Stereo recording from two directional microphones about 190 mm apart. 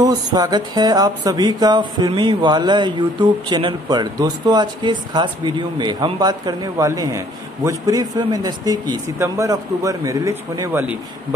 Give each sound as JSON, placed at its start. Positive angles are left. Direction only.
{"t": 0.0, "sound": "speech", "side_deg": -20}